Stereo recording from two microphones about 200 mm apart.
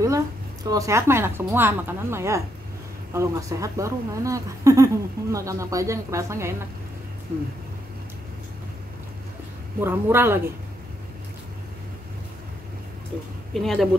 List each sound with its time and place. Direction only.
0.7 s a woman's voice: 15° right (ahead or behind)
9.8 s a woman's voice: 10° right (ahead or behind)
13.5 s speech: centre (ahead or behind)